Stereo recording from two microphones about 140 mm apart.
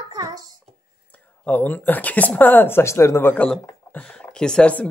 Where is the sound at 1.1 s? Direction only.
10° left (ahead or behind).